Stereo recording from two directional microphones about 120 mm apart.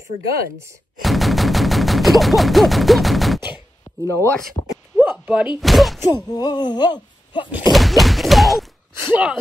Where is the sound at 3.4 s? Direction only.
35° left (ahead or behind).